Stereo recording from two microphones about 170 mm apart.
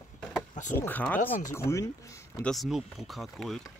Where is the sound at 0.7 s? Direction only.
10° left (ahead or behind).